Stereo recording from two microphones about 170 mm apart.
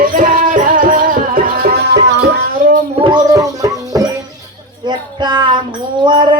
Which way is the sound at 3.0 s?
25° right (ahead or behind).